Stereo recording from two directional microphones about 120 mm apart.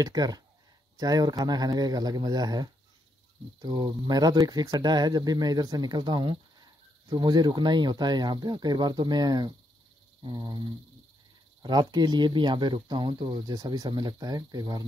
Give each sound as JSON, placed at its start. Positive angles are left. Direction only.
{"t": 0.0, "sound": "speech", "side_deg": -35}
{"t": 11.6, "sound": "speech", "side_deg": -35}